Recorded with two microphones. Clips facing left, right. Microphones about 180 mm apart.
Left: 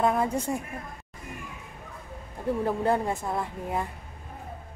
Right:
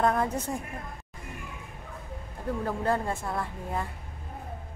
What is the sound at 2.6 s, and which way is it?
Speech, 20° left (ahead or behind).